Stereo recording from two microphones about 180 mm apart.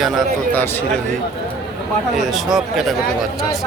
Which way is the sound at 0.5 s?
10° left (ahead or behind).